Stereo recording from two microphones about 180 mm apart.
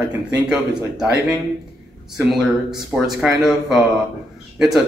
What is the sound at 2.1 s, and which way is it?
Speech, centre (ahead or behind).